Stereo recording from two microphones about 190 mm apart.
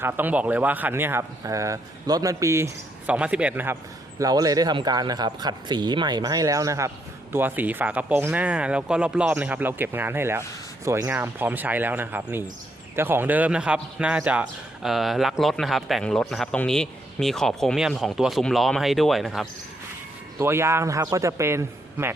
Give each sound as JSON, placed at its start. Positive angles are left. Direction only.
{"t": 0.0, "sound": "a man's voice", "side_deg": -10}
{"t": 20.4, "sound": "speech", "side_deg": -15}